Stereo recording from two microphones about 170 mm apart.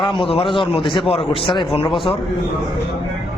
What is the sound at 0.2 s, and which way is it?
A man's voice, 30° left (ahead or behind).